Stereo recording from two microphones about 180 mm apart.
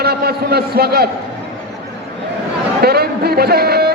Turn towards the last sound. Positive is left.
turn(degrees=-60)  # may be behind; listen again after turning